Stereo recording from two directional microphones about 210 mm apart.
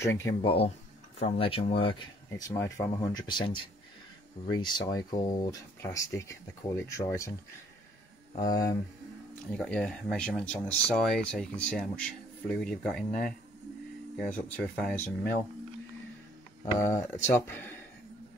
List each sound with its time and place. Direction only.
0.0 s speech: 10° left (ahead or behind)
0.4 s speech: 25° left (ahead or behind)
9.5 s speech: 5° left (ahead or behind)
16.7 s speech: 15° left (ahead or behind)